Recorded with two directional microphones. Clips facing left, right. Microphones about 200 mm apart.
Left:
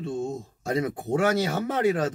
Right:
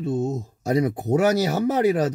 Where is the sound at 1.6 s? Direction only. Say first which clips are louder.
Right 6 dB; 30° right (ahead or behind).